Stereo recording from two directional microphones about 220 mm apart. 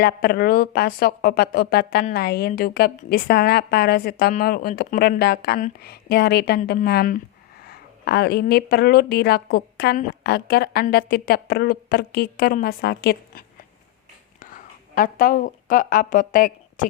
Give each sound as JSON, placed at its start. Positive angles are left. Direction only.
{"t": 0.0, "sound": "a woman's voice", "side_deg": 45}